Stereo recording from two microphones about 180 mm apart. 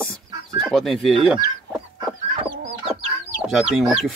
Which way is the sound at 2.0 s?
30° right (ahead or behind).